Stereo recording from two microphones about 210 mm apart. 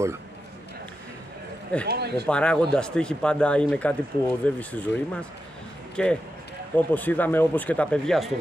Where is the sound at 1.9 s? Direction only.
50° right (ahead or behind).